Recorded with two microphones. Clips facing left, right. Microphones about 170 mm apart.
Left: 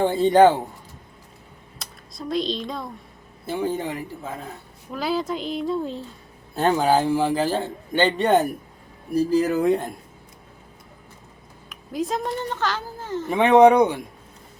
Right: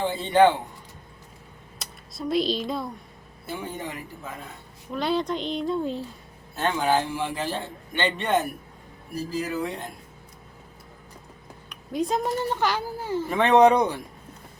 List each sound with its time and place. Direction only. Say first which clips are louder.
0.0 s a man's voice: left 4 dB; 45° left (ahead or behind)
1.8 s speech: right 2 dB; centre (ahead or behind)
3.4 s a man's voice: left 8 dB; 30° left (ahead or behind)
4.9 s speech: even; 5° left (ahead or behind)
6.6 s a man's voice: left 5 dB; 40° left (ahead or behind)
9.6 s speech: left 10 dB; 45° left (ahead or behind)
11.7 s speech: even; centre (ahead or behind)
13.3 s speech: left 4 dB; 15° left (ahead or behind)